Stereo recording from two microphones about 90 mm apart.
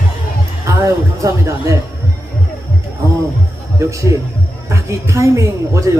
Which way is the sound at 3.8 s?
35° right (ahead or behind).